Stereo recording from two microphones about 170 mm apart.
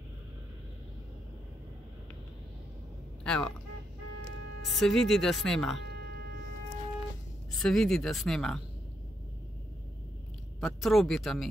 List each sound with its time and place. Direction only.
3.3 s speech: 5° left (ahead or behind)
4.6 s speech: centre (ahead or behind)
5.9 s a sound: 75° right (ahead or behind)
7.5 s speech: 5° left (ahead or behind)
10.6 s speech: centre (ahead or behind)